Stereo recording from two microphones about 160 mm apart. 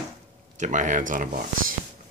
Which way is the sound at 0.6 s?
50° right (ahead or behind).